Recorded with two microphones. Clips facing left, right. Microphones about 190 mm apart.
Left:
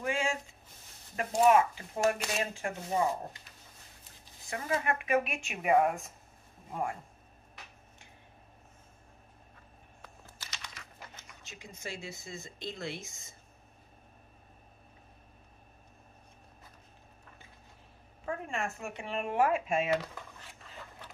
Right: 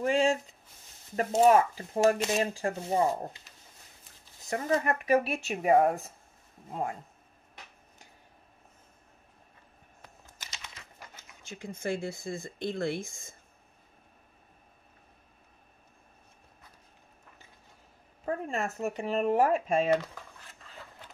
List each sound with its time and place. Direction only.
0.0 s speech: 35° right (ahead or behind)
4.5 s speech: 40° right (ahead or behind)
6.7 s speech: 20° right (ahead or behind)
10.2 s typing: 20° right (ahead or behind)
11.4 s speech: 55° right (ahead or behind)
18.2 s speech: 35° right (ahead or behind)